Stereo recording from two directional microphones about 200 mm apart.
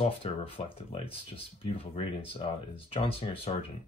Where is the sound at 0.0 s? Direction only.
30° left (ahead or behind).